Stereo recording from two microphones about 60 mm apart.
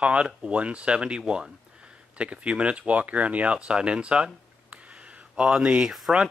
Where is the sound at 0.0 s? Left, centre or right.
Centre.